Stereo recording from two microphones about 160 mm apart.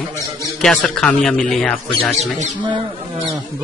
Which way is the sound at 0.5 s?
5° left (ahead or behind).